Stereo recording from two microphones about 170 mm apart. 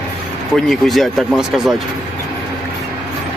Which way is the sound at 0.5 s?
Centre (ahead or behind).